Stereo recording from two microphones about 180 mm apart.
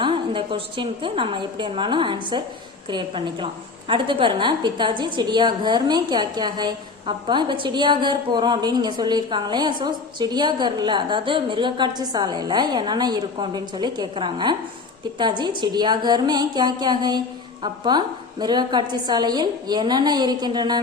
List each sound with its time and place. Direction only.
0.0 s a woman's voice: 30° right (ahead or behind)